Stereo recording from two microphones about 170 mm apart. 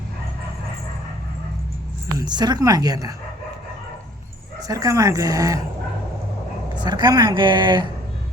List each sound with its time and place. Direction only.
2.1 s speech: 25° right (ahead or behind)
4.7 s speech: 20° right (ahead or behind)
6.7 s speech: 25° right (ahead or behind)